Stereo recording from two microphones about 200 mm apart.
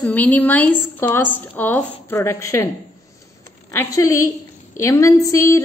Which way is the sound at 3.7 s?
15° left (ahead or behind).